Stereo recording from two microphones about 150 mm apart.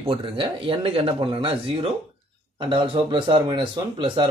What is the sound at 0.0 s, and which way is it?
A man's voice, 35° right (ahead or behind).